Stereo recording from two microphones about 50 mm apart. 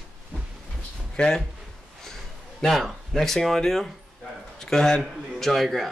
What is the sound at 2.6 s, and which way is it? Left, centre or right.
A man's voice, centre.